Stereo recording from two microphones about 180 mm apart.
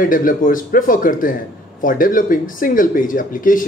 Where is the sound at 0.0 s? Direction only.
50° left (ahead or behind).